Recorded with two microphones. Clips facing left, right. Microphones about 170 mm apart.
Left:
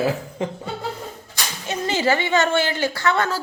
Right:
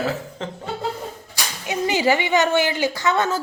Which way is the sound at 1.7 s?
15° right (ahead or behind).